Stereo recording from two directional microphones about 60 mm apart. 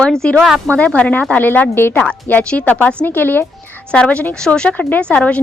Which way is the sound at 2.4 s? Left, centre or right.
Centre.